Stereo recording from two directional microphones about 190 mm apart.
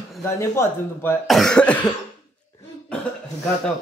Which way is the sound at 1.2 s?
Centre (ahead or behind).